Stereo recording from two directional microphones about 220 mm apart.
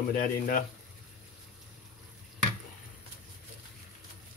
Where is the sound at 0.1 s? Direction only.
40° left (ahead or behind).